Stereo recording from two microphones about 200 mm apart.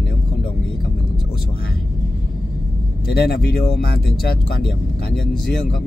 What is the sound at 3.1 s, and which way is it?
Speech, 50° left (ahead or behind).